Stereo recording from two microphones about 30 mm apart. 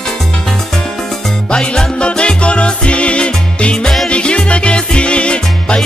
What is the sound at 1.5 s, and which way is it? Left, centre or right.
Music, left.